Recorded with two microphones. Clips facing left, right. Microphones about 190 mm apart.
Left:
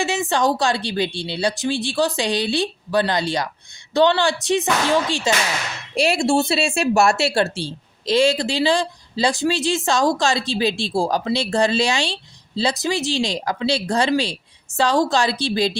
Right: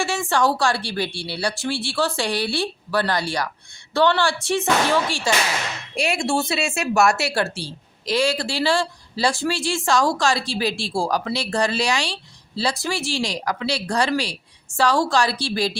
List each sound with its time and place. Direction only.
0.0 s speech: 20° left (ahead or behind)
6.0 s speech: 30° left (ahead or behind)